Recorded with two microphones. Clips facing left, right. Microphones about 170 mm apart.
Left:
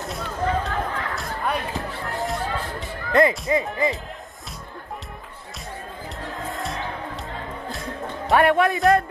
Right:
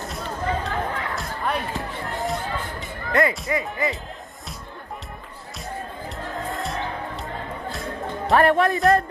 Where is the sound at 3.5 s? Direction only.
25° left (ahead or behind).